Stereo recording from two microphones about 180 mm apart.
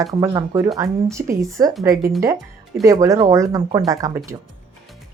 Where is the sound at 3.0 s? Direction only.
20° right (ahead or behind).